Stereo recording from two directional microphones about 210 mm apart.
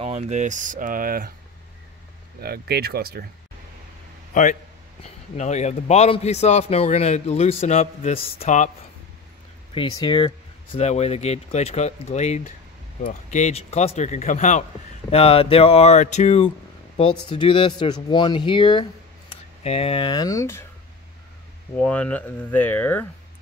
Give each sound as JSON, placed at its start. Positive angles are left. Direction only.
{"t": 0.0, "sound": "speech", "side_deg": -35}
{"t": 2.4, "sound": "speech", "side_deg": -50}
{"t": 4.3, "sound": "a man's voice", "side_deg": 40}
{"t": 9.8, "sound": "a man's voice", "side_deg": 20}
{"t": 21.7, "sound": "speech", "side_deg": 5}